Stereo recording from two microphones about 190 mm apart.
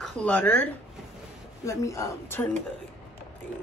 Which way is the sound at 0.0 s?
5° left (ahead or behind).